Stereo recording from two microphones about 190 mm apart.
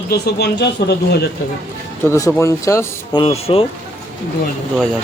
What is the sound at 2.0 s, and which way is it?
Speech, 15° left (ahead or behind).